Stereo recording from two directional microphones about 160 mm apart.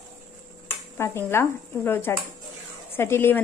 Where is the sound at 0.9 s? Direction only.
15° left (ahead or behind).